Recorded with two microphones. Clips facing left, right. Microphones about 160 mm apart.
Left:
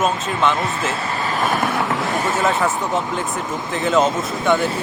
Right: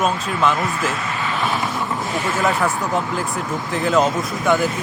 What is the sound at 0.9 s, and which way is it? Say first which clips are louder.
Vehicle: left 1 dB; 35° left (ahead or behind).